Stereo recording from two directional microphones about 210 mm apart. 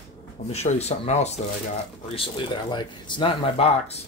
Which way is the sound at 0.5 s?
30° left (ahead or behind).